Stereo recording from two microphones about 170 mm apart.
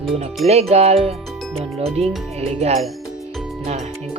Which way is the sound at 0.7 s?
40° right (ahead or behind).